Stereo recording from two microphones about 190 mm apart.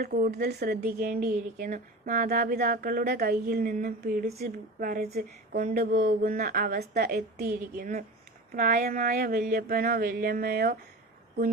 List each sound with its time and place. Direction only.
0.0 s speech: 50° right (ahead or behind)